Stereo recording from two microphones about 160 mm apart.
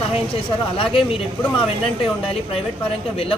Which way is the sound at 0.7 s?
35° left (ahead or behind).